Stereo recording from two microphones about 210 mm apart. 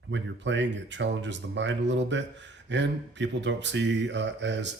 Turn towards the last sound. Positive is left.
turn(degrees=-60)  # may be behind; listen again after turning